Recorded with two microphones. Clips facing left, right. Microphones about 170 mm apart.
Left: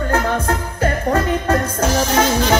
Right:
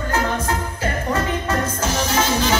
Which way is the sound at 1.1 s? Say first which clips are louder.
Left 3 dB; 55° left (ahead or behind).